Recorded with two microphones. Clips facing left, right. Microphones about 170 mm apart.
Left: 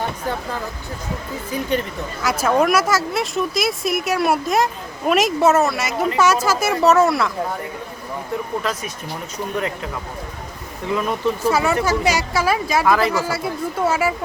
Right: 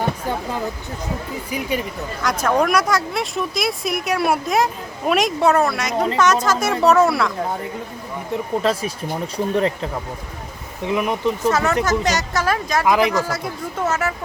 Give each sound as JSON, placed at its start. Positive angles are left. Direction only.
{"t": 1.5, "sound": "speech", "side_deg": -10}
{"t": 2.2, "sound": "speech", "side_deg": 5}
{"t": 8.6, "sound": "speech", "side_deg": -30}
{"t": 10.8, "sound": "speech", "side_deg": -15}
{"t": 11.4, "sound": "speech", "side_deg": 10}
{"t": 12.8, "sound": "speech", "side_deg": -15}
{"t": 13.1, "sound": "speech", "side_deg": 5}